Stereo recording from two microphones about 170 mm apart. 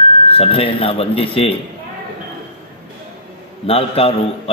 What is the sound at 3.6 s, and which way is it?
Speech, 35° left (ahead or behind).